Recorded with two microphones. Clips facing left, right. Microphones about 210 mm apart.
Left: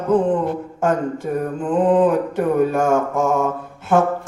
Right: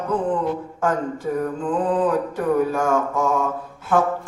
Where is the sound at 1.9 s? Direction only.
25° left (ahead or behind).